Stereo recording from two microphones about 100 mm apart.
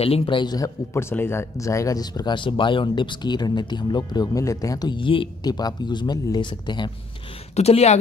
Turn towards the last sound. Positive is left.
turn(degrees=90)